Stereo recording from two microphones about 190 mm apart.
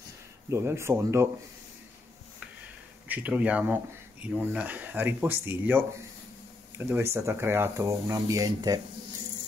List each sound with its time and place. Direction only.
0.5 s speech: 15° right (ahead or behind)
3.1 s speech: 10° right (ahead or behind)